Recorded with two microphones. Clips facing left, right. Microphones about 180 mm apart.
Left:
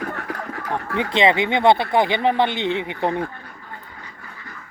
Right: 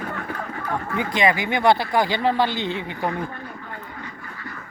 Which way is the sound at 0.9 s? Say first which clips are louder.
Left 3 dB; 25° left (ahead or behind).